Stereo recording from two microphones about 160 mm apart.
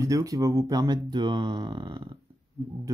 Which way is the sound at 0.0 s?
20° right (ahead or behind).